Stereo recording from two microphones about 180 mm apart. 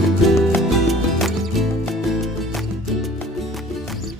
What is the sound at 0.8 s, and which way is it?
Music, centre (ahead or behind).